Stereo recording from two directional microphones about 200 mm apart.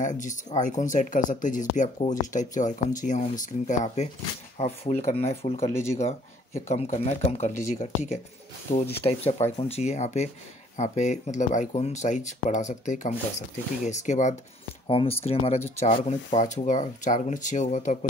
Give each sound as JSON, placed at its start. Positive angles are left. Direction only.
{"t": 0.0, "sound": "speech", "side_deg": 40}
{"t": 5.7, "sound": "speech", "side_deg": 15}
{"t": 6.7, "sound": "speech", "side_deg": 35}